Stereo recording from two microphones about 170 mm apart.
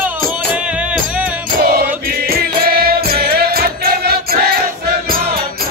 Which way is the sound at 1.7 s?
60° right (ahead or behind).